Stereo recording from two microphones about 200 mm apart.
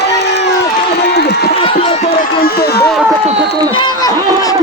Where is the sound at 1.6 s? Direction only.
30° left (ahead or behind).